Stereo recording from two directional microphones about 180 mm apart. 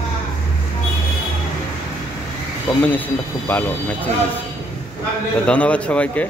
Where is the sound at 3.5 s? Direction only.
10° left (ahead or behind).